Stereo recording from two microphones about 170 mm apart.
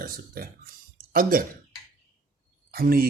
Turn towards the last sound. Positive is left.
turn(degrees=-60)  # may be behind; listen again after turning